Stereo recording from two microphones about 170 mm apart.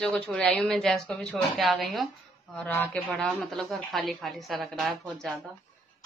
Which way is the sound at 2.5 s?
10° left (ahead or behind).